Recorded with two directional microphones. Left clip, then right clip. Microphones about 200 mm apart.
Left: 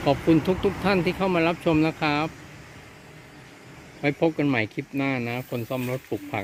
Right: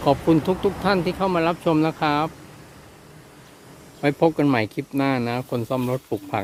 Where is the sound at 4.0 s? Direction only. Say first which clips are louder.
Right 4 dB; 15° right (ahead or behind).